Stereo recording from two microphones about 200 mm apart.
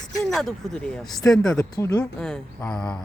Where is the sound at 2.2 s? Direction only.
5° left (ahead or behind).